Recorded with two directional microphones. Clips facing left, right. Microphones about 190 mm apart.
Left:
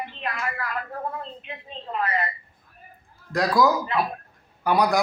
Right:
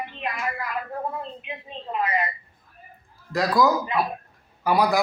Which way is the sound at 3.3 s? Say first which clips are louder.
Even; centre (ahead or behind).